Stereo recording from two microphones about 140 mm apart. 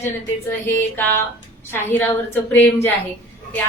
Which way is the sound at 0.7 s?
15° left (ahead or behind).